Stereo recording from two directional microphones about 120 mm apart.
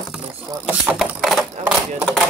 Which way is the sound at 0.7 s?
10° right (ahead or behind).